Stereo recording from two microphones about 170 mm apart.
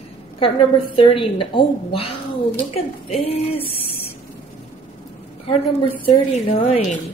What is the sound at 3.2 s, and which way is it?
Speech, 35° left (ahead or behind).